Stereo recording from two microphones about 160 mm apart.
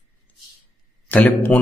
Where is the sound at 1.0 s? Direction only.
10° left (ahead or behind).